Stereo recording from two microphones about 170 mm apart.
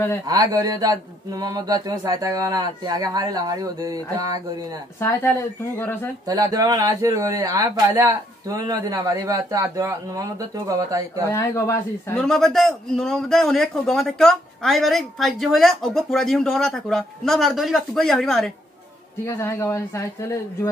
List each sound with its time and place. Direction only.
0.3 s speech: 20° right (ahead or behind)
5.0 s speech: 10° left (ahead or behind)
6.2 s speech: 20° right (ahead or behind)
11.2 s speech: 15° left (ahead or behind)
12.2 s a man's voice: centre (ahead or behind)
19.2 s speech: 15° left (ahead or behind)